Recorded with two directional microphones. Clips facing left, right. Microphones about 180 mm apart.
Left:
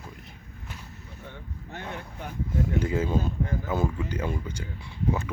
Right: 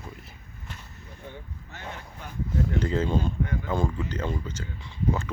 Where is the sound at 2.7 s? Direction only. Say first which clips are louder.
Even; 10° left (ahead or behind).